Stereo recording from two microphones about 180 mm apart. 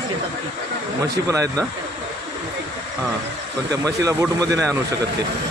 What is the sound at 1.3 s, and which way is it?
Speech, 20° right (ahead or behind).